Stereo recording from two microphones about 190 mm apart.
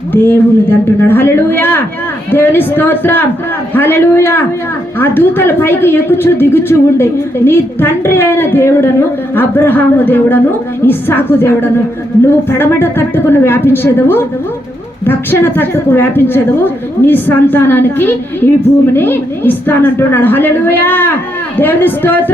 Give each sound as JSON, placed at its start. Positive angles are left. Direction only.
{"t": 0.1, "sound": "speech", "side_deg": 10}